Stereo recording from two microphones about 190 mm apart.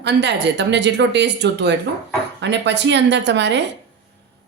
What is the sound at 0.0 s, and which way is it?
Speech, 65° right (ahead or behind).